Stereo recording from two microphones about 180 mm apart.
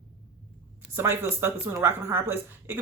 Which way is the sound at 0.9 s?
15° right (ahead or behind).